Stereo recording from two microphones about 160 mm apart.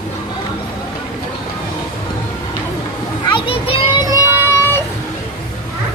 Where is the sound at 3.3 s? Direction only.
35° left (ahead or behind).